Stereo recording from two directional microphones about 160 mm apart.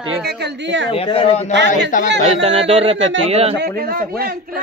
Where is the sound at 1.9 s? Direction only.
55° left (ahead or behind).